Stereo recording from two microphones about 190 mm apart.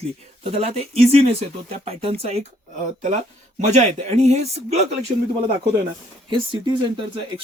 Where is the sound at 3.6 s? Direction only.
35° right (ahead or behind).